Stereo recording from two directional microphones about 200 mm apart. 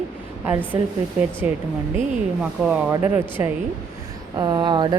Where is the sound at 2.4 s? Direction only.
5° right (ahead or behind).